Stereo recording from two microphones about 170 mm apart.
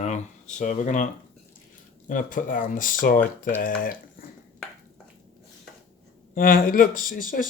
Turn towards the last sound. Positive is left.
turn(degrees=55)  # may be behind; listen again after turning